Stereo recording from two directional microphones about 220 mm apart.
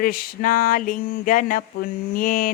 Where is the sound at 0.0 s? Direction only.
40° left (ahead or behind).